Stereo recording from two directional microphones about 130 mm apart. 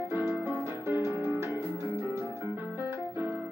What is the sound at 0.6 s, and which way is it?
Music, 20° right (ahead or behind).